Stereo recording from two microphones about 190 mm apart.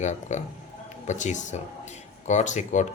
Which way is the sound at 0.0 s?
40° left (ahead or behind).